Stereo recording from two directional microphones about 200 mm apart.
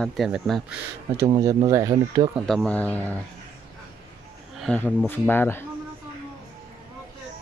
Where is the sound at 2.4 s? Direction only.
5° left (ahead or behind).